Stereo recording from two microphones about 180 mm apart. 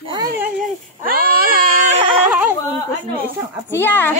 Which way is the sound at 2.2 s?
10° right (ahead or behind).